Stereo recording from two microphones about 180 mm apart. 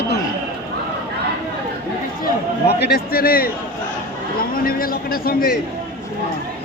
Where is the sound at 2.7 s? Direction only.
65° left (ahead or behind).